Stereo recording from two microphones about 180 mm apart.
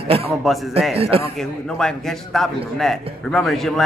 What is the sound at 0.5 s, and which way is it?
A man's voice, centre (ahead or behind).